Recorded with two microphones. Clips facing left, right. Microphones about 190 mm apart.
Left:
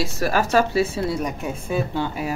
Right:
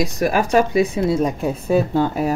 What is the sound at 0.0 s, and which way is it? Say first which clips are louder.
A woman's voice: right 3 dB; 15° right (ahead or behind).